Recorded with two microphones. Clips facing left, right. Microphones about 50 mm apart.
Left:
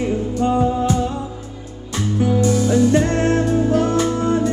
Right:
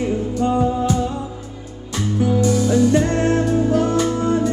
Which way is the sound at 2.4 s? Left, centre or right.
Left.